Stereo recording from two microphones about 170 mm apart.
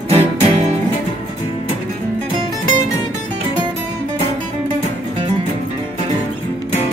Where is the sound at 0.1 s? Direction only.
35° right (ahead or behind).